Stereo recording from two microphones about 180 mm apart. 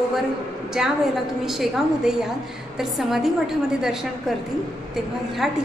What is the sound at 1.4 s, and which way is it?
A woman's voice, centre (ahead or behind).